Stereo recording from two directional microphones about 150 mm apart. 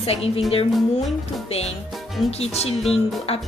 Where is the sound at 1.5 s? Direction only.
45° left (ahead or behind).